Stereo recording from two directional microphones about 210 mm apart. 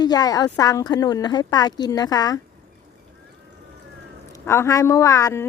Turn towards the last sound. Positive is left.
turn(degrees=15)  # may be behind; listen again after turning